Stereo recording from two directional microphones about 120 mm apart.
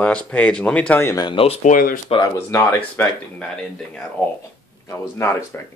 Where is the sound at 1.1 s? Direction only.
40° left (ahead or behind).